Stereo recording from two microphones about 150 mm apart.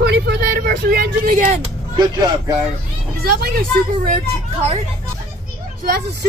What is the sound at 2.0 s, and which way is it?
Speech, 25° right (ahead or behind).